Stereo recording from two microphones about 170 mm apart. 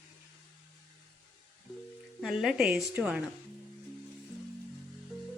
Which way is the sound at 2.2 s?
5° right (ahead or behind).